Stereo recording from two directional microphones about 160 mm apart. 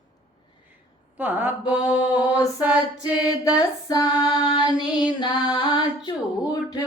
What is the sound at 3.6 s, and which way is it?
Speech, 25° left (ahead or behind).